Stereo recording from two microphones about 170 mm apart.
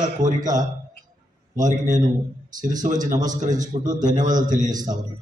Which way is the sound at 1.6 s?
45° right (ahead or behind).